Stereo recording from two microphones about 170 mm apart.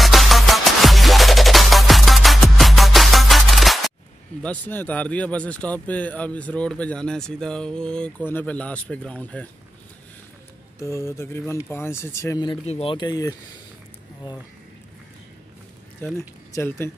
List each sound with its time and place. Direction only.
0.0 s music: centre (ahead or behind)
4.4 s speech: 10° left (ahead or behind)
10.8 s speech: 15° left (ahead or behind)
12.6 s speech: 35° left (ahead or behind)
16.2 s speech: 15° left (ahead or behind)